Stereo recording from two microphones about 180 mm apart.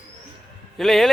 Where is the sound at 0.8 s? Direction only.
Centre (ahead or behind).